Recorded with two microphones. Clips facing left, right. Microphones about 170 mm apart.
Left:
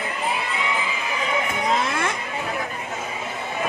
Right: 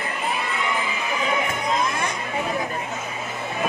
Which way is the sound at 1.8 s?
80° left.